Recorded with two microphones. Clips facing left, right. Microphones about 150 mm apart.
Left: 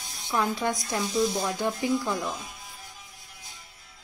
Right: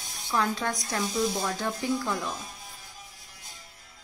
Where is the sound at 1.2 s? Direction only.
5° left (ahead or behind).